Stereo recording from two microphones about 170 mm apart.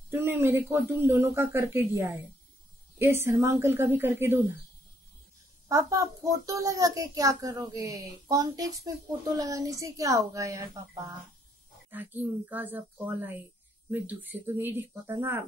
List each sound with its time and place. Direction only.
0.1 s speech: 15° right (ahead or behind)
3.3 s speech: 15° right (ahead or behind)
5.7 s a child's voice: 20° right (ahead or behind)